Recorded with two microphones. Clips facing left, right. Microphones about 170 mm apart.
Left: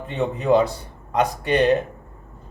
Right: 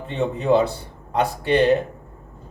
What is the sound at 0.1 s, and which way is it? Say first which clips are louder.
Speech: even; 30° right (ahead or behind).